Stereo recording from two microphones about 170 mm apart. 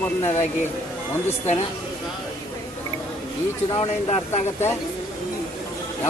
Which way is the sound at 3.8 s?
35° left (ahead or behind).